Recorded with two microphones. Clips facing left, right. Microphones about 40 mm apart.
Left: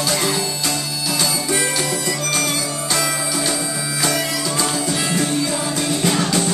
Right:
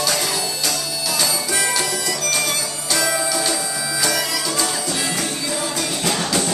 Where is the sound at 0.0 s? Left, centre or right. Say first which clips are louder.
Left 2 dB; centre.